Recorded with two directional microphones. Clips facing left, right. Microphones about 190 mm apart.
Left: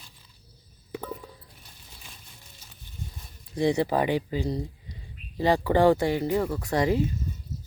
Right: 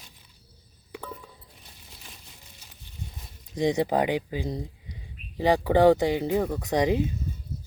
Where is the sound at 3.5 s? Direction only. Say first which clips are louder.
Even; 15° right (ahead or behind).